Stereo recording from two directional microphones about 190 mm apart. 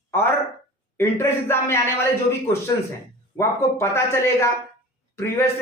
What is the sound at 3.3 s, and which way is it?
Speech, 15° left (ahead or behind).